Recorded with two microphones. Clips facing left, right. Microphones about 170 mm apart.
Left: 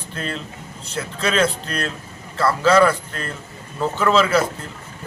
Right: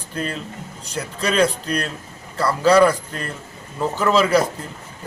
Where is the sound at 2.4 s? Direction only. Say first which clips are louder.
Right 1 dB; 15° right (ahead or behind).